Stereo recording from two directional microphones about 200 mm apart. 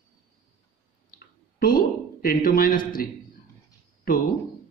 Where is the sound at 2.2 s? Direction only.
45° left (ahead or behind).